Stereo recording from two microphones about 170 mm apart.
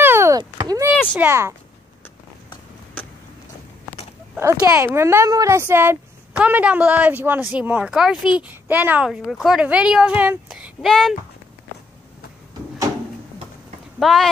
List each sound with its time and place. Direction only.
0.0 s a sound: 15° right (ahead or behind)
1.1 s speech: 15° right (ahead or behind)
4.4 s speech: 15° right (ahead or behind); by 11.1 s centre (ahead or behind)
13.9 s speech: centre (ahead or behind)